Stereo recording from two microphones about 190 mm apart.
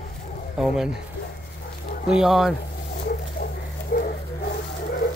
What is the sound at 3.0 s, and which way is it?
Dog, 50° left (ahead or behind).